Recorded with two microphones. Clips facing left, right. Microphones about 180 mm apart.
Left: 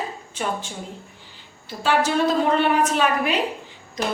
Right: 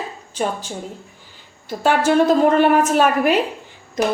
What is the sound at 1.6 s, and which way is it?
A woman's voice, 50° right (ahead or behind).